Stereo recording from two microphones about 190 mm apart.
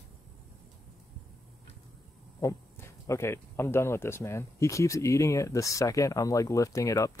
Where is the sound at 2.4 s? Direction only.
15° left (ahead or behind).